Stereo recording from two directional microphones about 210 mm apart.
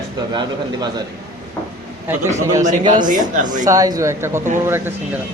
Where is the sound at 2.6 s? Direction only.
35° right (ahead or behind).